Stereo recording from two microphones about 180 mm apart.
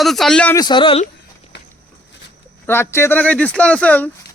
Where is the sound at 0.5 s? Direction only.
25° left (ahead or behind).